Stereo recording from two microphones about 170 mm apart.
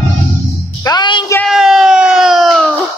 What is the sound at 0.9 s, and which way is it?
Music, 25° left (ahead or behind).